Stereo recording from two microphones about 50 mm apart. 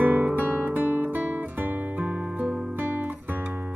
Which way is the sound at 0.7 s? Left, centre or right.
Right.